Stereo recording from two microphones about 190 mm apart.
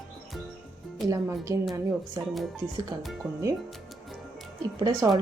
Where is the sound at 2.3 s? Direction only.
Centre (ahead or behind).